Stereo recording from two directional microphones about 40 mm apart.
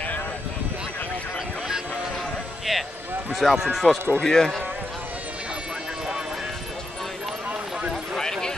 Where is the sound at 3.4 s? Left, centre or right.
Centre.